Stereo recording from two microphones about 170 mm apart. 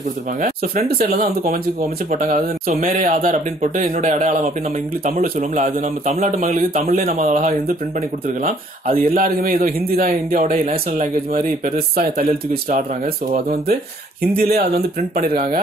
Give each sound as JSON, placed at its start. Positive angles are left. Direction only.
{"t": 0.4, "sound": "speech", "side_deg": -55}
{"t": 7.2, "sound": "speech", "side_deg": -45}